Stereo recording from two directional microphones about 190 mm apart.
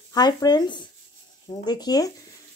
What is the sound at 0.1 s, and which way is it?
Speech, 20° left (ahead or behind).